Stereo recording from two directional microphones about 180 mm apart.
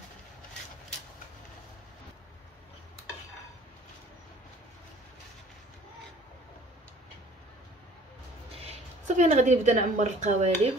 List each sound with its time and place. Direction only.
8.6 s a woman's voice: 40° right (ahead or behind)